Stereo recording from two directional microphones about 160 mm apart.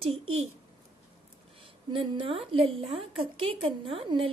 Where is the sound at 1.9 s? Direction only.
35° right (ahead or behind).